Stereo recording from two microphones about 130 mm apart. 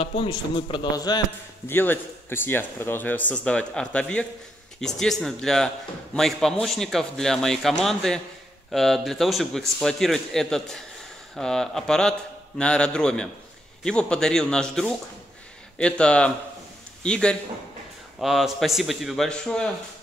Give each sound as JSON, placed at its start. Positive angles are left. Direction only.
{"t": 0.0, "sound": "a man's voice", "side_deg": 45}
{"t": 1.7, "sound": "a man's voice", "side_deg": 15}